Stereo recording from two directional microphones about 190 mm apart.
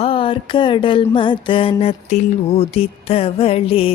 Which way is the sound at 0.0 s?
30° left (ahead or behind).